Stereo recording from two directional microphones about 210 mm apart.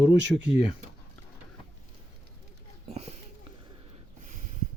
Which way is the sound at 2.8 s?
30° right (ahead or behind).